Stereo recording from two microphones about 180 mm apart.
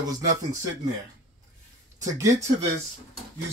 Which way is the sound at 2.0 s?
20° right (ahead or behind).